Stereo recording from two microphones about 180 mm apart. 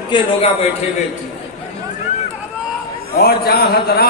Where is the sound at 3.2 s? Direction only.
60° left (ahead or behind).